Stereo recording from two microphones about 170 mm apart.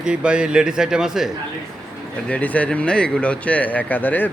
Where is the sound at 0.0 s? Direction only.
5° right (ahead or behind).